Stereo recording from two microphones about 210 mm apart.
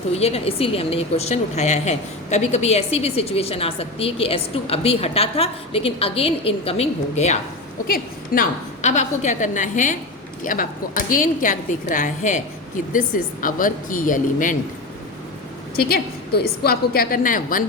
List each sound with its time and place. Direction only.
0.2 s a woman's voice: 30° left (ahead or behind)
7.9 s a woman's voice: 45° left (ahead or behind)
15.8 s a woman's voice: 45° left (ahead or behind)